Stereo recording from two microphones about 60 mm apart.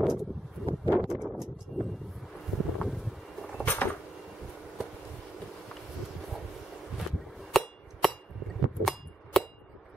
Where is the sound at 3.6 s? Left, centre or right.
Left.